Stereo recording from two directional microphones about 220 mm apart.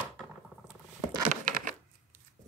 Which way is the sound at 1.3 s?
40° right (ahead or behind).